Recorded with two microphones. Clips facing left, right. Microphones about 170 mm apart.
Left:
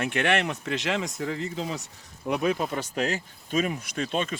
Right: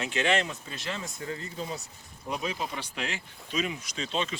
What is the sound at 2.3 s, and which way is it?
Speech, 55° left (ahead or behind).